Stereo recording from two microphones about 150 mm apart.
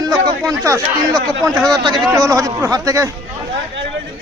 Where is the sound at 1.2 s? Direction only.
5° left (ahead or behind).